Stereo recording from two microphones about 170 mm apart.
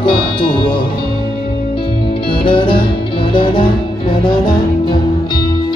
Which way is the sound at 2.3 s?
30° left (ahead or behind).